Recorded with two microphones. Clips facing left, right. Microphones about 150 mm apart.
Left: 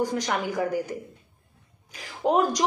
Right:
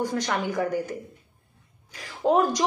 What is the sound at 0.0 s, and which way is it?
Speech, 15° left (ahead or behind).